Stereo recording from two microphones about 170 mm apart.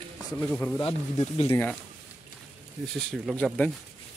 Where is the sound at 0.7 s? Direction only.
30° left (ahead or behind).